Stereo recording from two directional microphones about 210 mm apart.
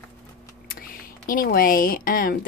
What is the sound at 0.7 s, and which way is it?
Speech, 45° left (ahead or behind).